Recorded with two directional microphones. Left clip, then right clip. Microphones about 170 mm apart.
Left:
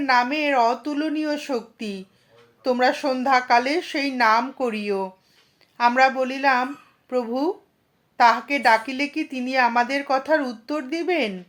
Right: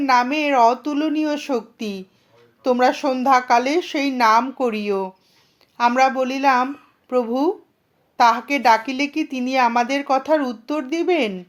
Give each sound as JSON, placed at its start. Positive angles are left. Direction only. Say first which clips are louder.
{"t": 0.0, "sound": "a woman's voice", "louder": "right 2 dB", "side_deg": -35}